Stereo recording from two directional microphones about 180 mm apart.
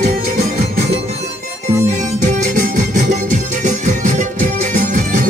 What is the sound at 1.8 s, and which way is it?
Music, 40° right (ahead or behind).